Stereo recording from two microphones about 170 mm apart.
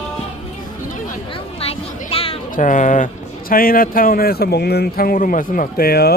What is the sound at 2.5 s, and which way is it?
Speech, 50° left (ahead or behind).